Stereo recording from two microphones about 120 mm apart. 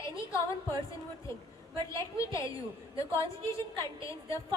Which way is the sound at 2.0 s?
25° left (ahead or behind).